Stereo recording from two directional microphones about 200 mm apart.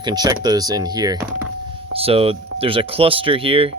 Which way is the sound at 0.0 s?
20° right (ahead or behind).